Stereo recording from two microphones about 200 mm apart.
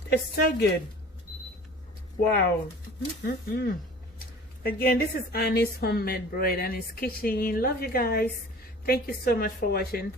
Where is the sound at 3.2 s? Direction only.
55° left (ahead or behind).